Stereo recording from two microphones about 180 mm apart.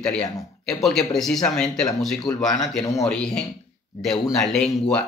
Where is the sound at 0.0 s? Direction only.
5° left (ahead or behind).